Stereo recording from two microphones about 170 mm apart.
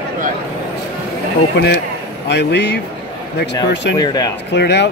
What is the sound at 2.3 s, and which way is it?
Speech, 80° left.